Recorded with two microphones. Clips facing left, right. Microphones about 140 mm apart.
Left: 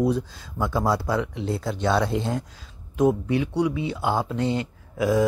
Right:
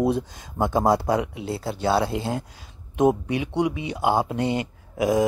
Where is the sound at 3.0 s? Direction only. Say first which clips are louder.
Even; 20° right (ahead or behind).